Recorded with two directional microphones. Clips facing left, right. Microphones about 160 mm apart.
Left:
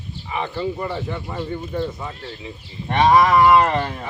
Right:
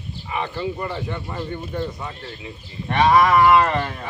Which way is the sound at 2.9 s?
20° left (ahead or behind).